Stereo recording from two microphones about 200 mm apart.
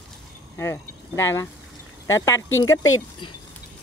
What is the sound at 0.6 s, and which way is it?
Speech, 15° left (ahead or behind).